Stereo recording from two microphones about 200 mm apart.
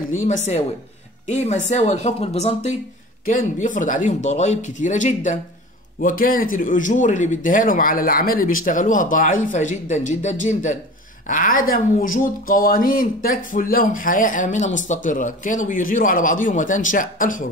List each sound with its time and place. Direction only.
0.1 s speech: 40° left (ahead or behind)